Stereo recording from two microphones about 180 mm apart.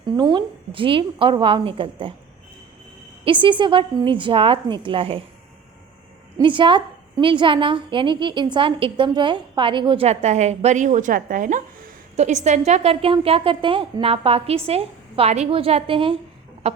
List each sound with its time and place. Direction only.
0.2 s a woman's voice: 25° right (ahead or behind)
3.2 s a woman's voice: 30° right (ahead or behind)
6.3 s a woman's voice: 25° right (ahead or behind)